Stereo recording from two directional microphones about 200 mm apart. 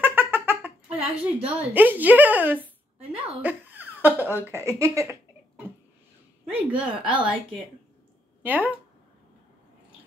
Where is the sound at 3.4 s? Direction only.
10° right (ahead or behind).